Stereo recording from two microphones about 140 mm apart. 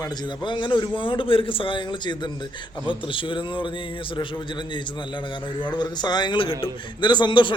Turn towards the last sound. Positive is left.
turn(degrees=35)  # may be behind; listen again after turning